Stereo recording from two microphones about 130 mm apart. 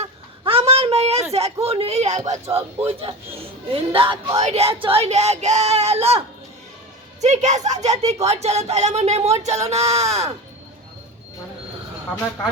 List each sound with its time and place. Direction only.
0.0 s a sound: 50° right (ahead or behind)
1.6 s speech: 50° right (ahead or behind)
2.8 s speech: 45° right (ahead or behind)
4.4 s speech: 55° right (ahead or behind)
7.2 s speech: 65° right (ahead or behind)